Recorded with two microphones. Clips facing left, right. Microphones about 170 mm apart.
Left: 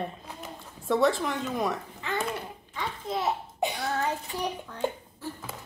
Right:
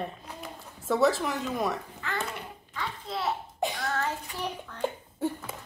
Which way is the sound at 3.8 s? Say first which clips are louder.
Left 2 dB; 15° left (ahead or behind).